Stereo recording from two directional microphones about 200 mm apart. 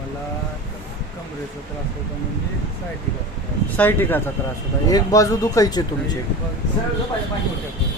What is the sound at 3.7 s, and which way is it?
Speech, 10° left (ahead or behind).